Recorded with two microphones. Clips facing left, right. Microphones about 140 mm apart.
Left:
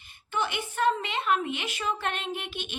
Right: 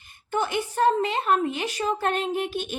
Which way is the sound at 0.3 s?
45° right (ahead or behind).